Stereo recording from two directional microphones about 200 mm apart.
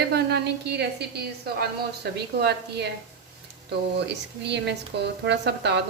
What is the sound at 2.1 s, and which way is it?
A woman's voice, 55° right (ahead or behind).